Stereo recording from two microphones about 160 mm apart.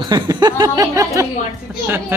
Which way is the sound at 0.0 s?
25° right (ahead or behind).